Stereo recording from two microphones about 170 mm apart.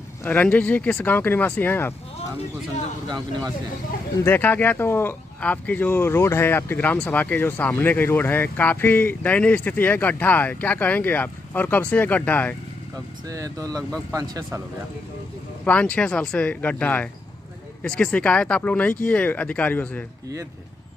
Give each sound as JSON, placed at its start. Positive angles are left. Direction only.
{"t": 0.2, "sound": "speech", "side_deg": 10}
{"t": 3.1, "sound": "speech", "side_deg": -25}
{"t": 4.2, "sound": "speech", "side_deg": 10}
{"t": 13.3, "sound": "speech", "side_deg": -20}
{"t": 15.6, "sound": "speech", "side_deg": 5}